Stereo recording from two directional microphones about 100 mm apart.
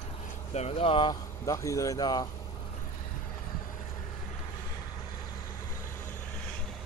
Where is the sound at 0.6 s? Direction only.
80° left.